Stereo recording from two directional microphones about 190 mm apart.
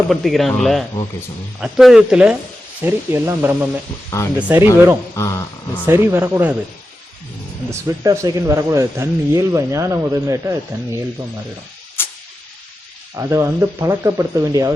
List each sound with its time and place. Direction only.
0.1 s speech: centre (ahead or behind)
5.2 s speech: 15° left (ahead or behind)
5.8 s speech: 15° right (ahead or behind)
7.7 s speech: 15° right (ahead or behind)
12.0 s a sound: 10° left (ahead or behind)
13.1 s speech: 15° right (ahead or behind)